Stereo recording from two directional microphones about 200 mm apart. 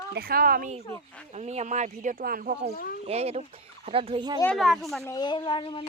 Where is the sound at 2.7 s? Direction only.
45° left (ahead or behind).